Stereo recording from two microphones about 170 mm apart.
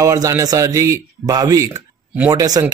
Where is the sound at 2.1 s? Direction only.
10° right (ahead or behind).